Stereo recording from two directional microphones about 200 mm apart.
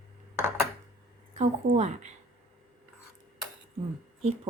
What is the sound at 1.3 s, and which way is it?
Speech, 35° right (ahead or behind).